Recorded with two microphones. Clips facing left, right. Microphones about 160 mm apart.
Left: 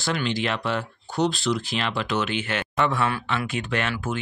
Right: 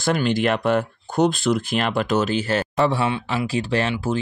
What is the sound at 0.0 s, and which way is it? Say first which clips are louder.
Speech: right 6 dB; 50° right (ahead or behind).